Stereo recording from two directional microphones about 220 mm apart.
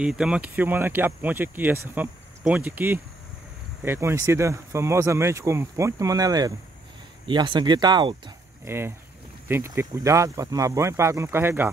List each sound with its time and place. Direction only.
0.0 s speech: 5° right (ahead or behind)